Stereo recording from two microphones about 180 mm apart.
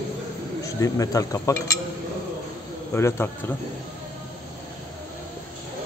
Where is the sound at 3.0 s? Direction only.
15° left (ahead or behind).